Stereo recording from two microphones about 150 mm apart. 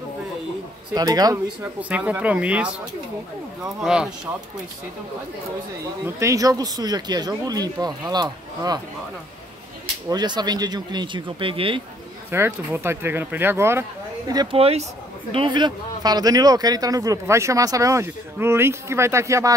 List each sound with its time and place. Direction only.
0.9 s a man's voice: 25° right (ahead or behind)
1.8 s speech: 10° right (ahead or behind)
6.0 s a man's voice: 20° right (ahead or behind)
10.0 s a man's voice: 30° right (ahead or behind)
12.3 s speech: 15° right (ahead or behind)
14.6 s speech: 45° right (ahead or behind)
15.3 s a man's voice: 35° right (ahead or behind)